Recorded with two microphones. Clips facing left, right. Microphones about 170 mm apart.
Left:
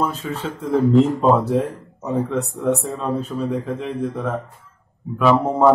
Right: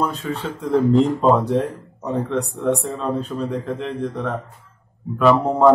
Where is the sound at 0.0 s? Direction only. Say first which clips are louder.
Even; centre (ahead or behind).